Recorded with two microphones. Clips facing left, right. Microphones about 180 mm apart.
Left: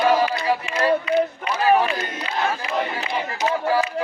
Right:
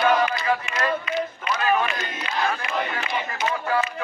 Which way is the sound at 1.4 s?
30° left (ahead or behind).